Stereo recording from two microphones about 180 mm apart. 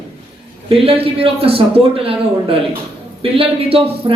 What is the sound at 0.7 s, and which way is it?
A woman's voice, 30° right (ahead or behind).